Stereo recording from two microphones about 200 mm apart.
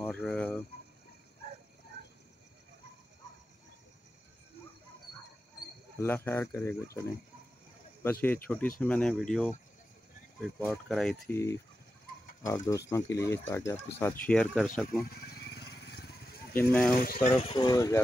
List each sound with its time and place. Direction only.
0.0 s fowl: 5° left (ahead or behind)
5.9 s speech: 10° left (ahead or behind)
10.6 s speech: centre (ahead or behind)
15.0 s vehicle: 50° left (ahead or behind)
16.5 s speech: 10° left (ahead or behind)
16.9 s speech: 45° left (ahead or behind)
17.3 s speech: 25° left (ahead or behind)